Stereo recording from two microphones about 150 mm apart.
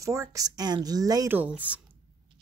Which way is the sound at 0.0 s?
20° right (ahead or behind).